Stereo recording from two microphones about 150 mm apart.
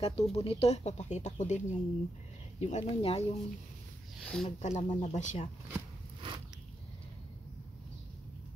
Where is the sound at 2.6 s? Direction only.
45° left (ahead or behind).